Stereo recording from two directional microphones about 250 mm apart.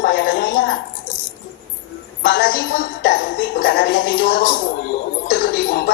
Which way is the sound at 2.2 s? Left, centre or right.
Left.